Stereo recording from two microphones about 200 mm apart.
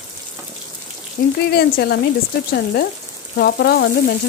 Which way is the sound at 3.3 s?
55° left (ahead or behind).